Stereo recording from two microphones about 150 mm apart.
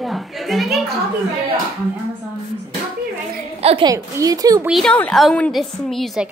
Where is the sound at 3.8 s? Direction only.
25° right (ahead or behind).